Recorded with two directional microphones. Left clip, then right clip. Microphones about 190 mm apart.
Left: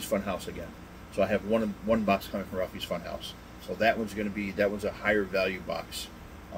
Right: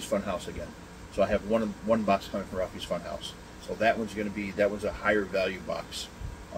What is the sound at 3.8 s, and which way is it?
Speech, 10° left (ahead or behind).